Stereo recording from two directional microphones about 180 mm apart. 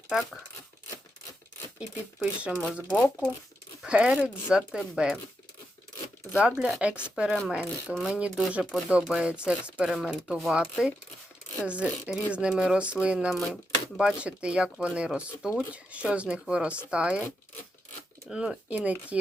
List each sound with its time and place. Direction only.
0.1 s speech: centre (ahead or behind)
1.8 s speech: centre (ahead or behind)
3.8 s speech: 5° right (ahead or behind)
6.6 s speech: 5° right (ahead or behind)
18.3 s speech: 5° right (ahead or behind)